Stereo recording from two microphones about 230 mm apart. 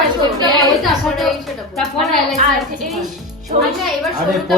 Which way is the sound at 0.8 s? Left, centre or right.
Centre.